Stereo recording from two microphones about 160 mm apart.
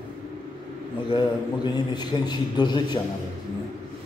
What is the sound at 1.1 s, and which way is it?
A man's voice, 30° left (ahead or behind).